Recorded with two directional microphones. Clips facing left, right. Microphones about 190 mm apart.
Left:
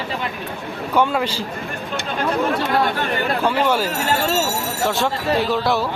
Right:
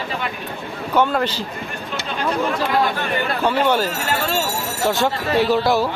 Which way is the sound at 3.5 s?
5° left (ahead or behind).